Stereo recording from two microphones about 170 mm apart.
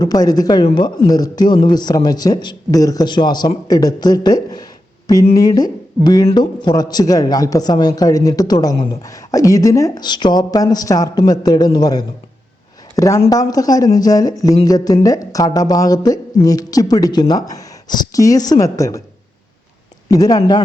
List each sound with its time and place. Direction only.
0.0 s a man's voice: 25° left (ahead or behind)
20.1 s a man's voice: 20° left (ahead or behind)